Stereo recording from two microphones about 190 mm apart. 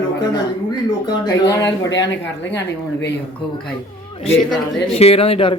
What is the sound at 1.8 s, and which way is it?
A woman's voice, 70° left (ahead or behind).